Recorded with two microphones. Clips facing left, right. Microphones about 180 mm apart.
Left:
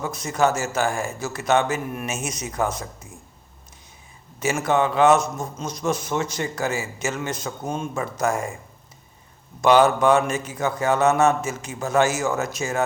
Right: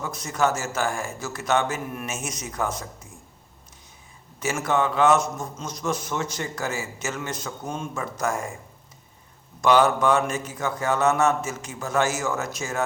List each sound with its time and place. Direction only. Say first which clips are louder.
0.0 s a man's voice: left 3 dB; 15° left (ahead or behind)
4.7 s a man's voice: left 3 dB; 20° left (ahead or behind)
7.6 s speech: left 5 dB; 30° left (ahead or behind)
8.2 s a man's voice: left 4 dB; 15° left (ahead or behind)
9.6 s a man's voice: left 3 dB; 20° left (ahead or behind)